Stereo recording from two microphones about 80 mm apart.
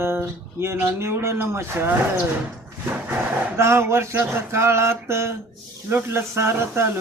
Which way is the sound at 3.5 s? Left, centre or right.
Right.